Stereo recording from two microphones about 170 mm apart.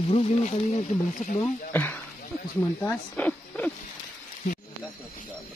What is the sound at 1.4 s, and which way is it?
Speech, 10° left (ahead or behind).